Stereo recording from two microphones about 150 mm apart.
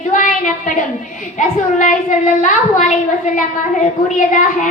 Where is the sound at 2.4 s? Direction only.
60° left (ahead or behind).